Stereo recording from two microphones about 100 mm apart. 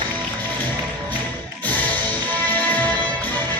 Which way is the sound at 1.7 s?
15° left (ahead or behind).